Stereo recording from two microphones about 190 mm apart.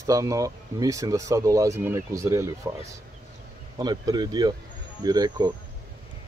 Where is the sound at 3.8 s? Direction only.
20° right (ahead or behind).